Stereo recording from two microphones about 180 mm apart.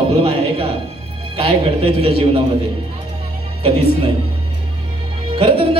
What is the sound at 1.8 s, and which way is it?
Speech, 30° right (ahead or behind).